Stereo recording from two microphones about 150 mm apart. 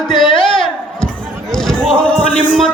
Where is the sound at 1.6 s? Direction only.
5° left (ahead or behind).